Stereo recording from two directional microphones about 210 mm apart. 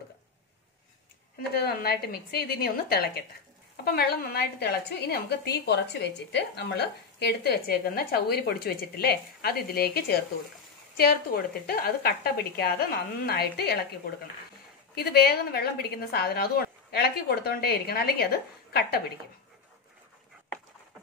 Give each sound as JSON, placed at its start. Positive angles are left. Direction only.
{"t": 1.6, "sound": "a woman's voice", "side_deg": 50}